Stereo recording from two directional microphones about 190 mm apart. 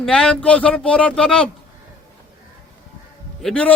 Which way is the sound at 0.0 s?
5° left (ahead or behind).